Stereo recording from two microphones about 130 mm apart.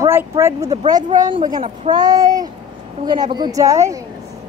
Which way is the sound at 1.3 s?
35° right (ahead or behind).